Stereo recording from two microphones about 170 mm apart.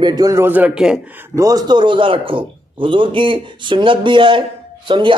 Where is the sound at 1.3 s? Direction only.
20° right (ahead or behind).